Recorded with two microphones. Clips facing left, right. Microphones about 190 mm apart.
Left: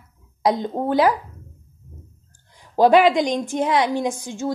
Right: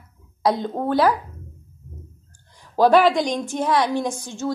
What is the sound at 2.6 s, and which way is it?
A woman's voice, 15° left (ahead or behind).